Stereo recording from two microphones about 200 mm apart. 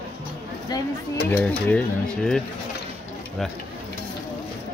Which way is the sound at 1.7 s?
5° left (ahead or behind).